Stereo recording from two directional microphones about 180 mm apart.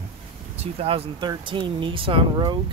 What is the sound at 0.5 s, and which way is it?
Speech, 35° right (ahead or behind).